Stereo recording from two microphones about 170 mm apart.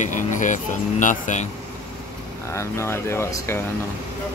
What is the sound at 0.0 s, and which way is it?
Speech, 50° left (ahead or behind).